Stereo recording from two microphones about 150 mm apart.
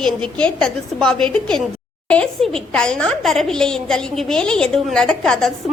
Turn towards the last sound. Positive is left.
turn(degrees=5)  # may be behind; listen again after turning